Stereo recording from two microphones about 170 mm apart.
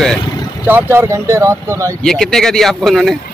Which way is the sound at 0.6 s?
15° right (ahead or behind).